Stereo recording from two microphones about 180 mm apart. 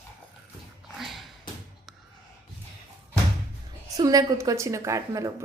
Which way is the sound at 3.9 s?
20° right (ahead or behind).